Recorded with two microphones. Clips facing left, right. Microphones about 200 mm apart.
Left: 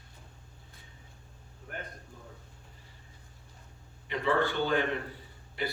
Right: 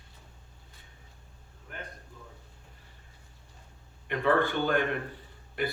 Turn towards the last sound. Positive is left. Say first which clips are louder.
# right 3 dB
turn(degrees=-50)  # may be behind; listen again after turning